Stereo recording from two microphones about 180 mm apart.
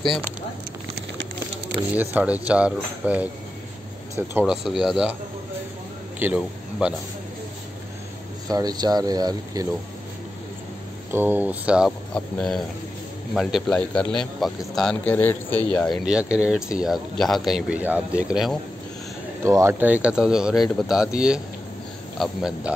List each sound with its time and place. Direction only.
2.0 s speech: 10° right (ahead or behind)
4.3 s speech: 10° right (ahead or behind)
6.1 s a man's voice: 10° right (ahead or behind)
8.5 s speech: 20° right (ahead or behind)
11.1 s a man's voice: 10° right (ahead or behind); by 15.9 s 10° left (ahead or behind)
16.0 s speech: 5° right (ahead or behind)
19.4 s speech: 15° right (ahead or behind)